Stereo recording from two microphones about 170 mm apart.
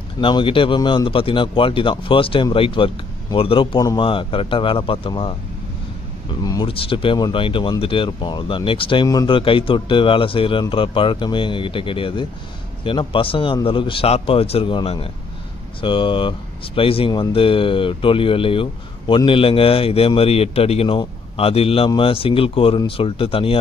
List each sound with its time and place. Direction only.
0.2 s speech: 30° left (ahead or behind)
6.4 s speech: 25° left (ahead or behind)